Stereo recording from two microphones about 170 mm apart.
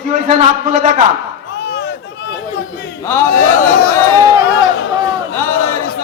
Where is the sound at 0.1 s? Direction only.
45° right (ahead or behind).